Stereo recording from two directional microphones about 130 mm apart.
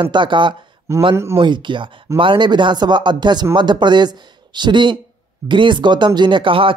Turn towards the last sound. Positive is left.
turn(degrees=-40)  # may be behind; listen again after turning